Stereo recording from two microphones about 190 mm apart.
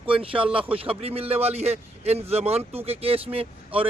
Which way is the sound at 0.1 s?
30° right (ahead or behind).